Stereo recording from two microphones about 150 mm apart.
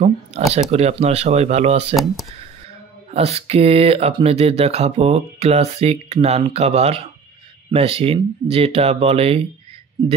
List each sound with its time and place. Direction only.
0.6 s speech: 45° right (ahead or behind)
3.1 s speech: 45° right (ahead or behind)